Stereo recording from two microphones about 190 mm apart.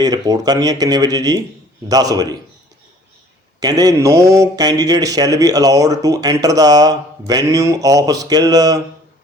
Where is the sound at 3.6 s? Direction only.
20° right (ahead or behind).